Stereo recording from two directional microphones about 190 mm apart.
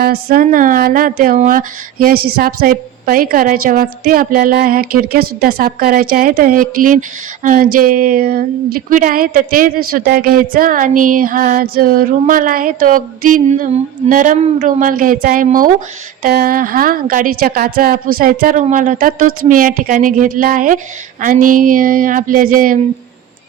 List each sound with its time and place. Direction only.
0.0 s speech: 55° right (ahead or behind)